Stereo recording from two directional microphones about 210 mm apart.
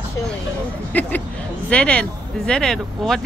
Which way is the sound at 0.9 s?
10° left (ahead or behind).